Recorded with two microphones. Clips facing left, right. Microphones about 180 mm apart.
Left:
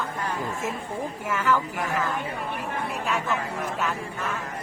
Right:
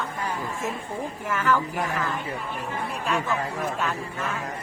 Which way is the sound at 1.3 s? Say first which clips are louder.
Even; 10° left (ahead or behind).